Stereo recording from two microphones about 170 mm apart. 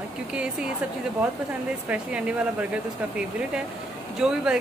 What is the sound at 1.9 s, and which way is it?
Speech, 5° right (ahead or behind).